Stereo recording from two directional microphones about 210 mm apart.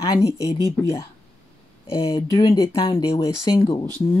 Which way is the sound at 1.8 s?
25° left (ahead or behind).